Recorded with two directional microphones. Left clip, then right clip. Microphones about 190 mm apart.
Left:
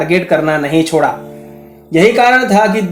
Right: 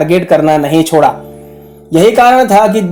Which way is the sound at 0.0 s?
40° right (ahead or behind).